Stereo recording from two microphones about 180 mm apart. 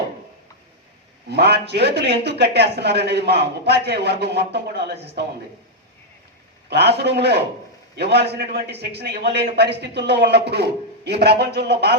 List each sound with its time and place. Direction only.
1.3 s speech: 65° right (ahead or behind)
6.7 s a man's voice: 65° right (ahead or behind)